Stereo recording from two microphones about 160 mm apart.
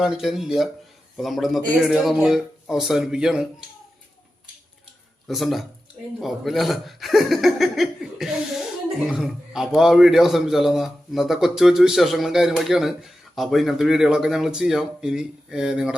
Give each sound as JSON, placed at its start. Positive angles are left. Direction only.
{"t": 0.0, "sound": "a man's voice", "side_deg": -5}
{"t": 5.3, "sound": "a man's voice", "side_deg": 0}